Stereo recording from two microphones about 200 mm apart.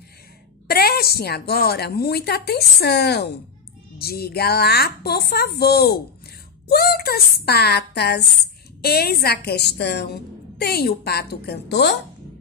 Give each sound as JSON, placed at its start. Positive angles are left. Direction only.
{"t": 0.7, "sound": "a woman's voice", "side_deg": 50}